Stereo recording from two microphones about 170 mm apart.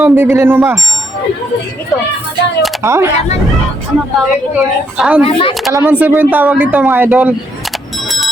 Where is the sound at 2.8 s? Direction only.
15° right (ahead or behind).